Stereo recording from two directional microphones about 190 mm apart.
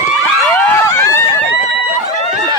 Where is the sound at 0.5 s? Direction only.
10° left (ahead or behind).